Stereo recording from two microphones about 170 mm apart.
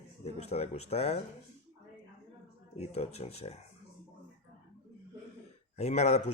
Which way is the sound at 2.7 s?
40° left (ahead or behind).